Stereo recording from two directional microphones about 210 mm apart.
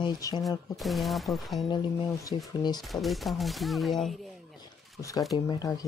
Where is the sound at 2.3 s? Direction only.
20° left (ahead or behind).